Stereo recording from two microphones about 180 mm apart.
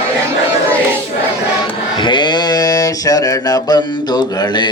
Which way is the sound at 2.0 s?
25° left (ahead or behind).